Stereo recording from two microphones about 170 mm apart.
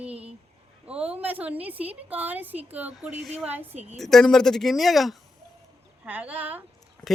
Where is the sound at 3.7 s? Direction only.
40° right (ahead or behind).